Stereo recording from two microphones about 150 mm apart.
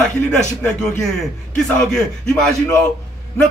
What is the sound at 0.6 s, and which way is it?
Speech, 5° left (ahead or behind).